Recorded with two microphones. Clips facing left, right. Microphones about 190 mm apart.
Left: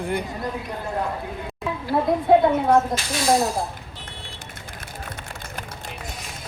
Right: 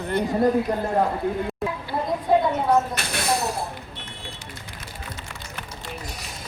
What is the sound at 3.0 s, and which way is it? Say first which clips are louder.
Speech: even; 65° right (ahead or behind).